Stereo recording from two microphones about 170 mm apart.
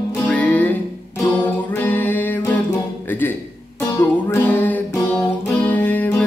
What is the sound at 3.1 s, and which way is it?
Speech, 10° left (ahead or behind).